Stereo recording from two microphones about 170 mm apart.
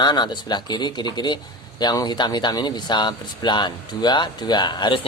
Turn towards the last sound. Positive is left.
turn(degrees=25)  # may be behind; listen again after turning